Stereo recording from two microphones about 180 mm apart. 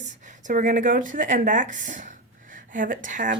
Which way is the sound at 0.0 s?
45° right (ahead or behind).